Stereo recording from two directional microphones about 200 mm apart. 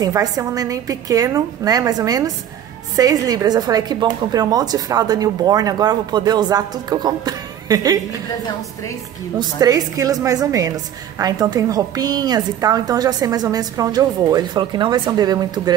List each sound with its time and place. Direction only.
0.0 s a woman's voice: 15° right (ahead or behind)
9.4 s a woman's voice: 20° right (ahead or behind)